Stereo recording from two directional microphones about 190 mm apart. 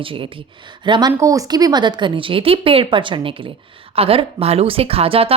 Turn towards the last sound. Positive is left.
turn(degrees=-30)  # may be behind; listen again after turning